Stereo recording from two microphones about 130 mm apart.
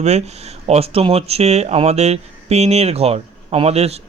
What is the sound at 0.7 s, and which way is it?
Speech, 50° right (ahead or behind).